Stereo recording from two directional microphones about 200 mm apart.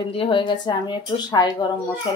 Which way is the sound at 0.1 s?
25° left (ahead or behind).